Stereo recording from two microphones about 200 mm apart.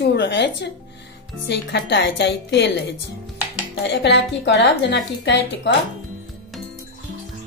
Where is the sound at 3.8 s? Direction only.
60° left (ahead or behind).